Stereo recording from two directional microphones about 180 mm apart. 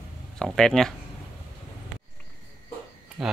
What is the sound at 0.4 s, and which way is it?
Speech, 5° left (ahead or behind).